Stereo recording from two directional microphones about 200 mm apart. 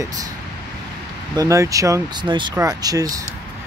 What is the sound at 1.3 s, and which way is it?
Speech, 15° right (ahead or behind).